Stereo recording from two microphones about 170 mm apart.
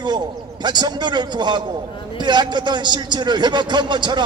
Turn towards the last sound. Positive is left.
turn(degrees=-25)  # may be behind; listen again after turning